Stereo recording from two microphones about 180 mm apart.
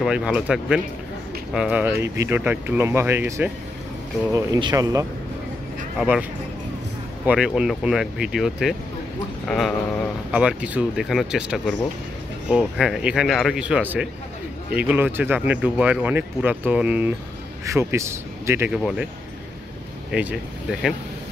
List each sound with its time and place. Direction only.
0.0 s speech: 5° right (ahead or behind); by 5.0 s 20° right (ahead or behind)
5.9 s speech: 5° right (ahead or behind)
7.2 s speech: 5° right (ahead or behind)
18.8 s speech: centre (ahead or behind)
20.1 s speech: 5° right (ahead or behind)